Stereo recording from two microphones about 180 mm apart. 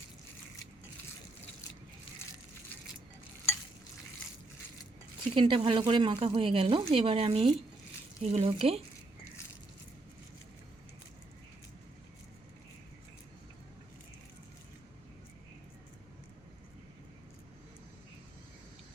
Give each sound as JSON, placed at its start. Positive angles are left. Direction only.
{"t": 5.3, "sound": "speech", "side_deg": -30}